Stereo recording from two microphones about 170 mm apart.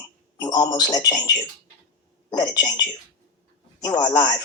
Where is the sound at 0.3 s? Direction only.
25° left (ahead or behind).